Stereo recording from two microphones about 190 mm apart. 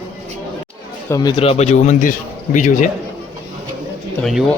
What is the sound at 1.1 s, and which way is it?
A man's voice, 20° left (ahead or behind).